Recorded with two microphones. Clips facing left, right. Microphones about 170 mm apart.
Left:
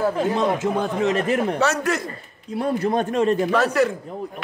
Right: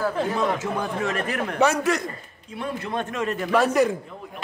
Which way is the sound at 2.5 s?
40° left (ahead or behind).